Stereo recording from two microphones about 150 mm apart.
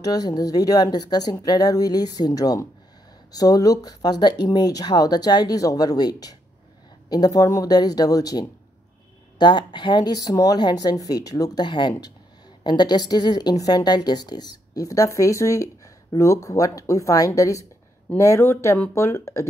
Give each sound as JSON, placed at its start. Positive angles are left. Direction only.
{"t": 0.0, "sound": "a woman's voice", "side_deg": 25}